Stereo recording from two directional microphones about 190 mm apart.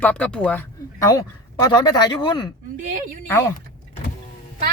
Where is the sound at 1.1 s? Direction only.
20° left (ahead or behind).